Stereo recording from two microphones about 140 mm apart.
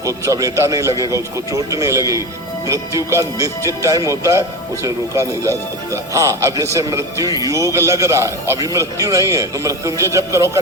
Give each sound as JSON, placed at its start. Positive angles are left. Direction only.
{"t": 0.0, "sound": "speech", "side_deg": -25}